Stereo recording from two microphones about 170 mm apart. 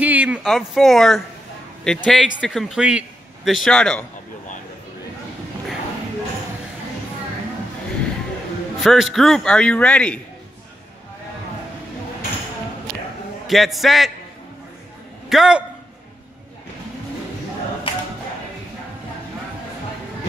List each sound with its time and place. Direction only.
0.0 s a man's voice: 10° right (ahead or behind)
8.8 s a man's voice: centre (ahead or behind)
13.5 s a man's voice: centre (ahead or behind)
15.2 s a man's voice: 5° right (ahead or behind)